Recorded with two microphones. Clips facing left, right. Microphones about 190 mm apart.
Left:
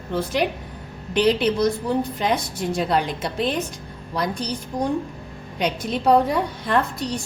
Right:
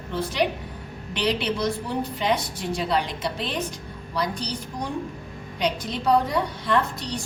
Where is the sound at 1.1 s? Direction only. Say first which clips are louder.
Left 6 dB; 45° left (ahead or behind).